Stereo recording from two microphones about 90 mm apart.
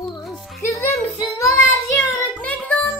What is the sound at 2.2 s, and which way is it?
Music, 15° left (ahead or behind).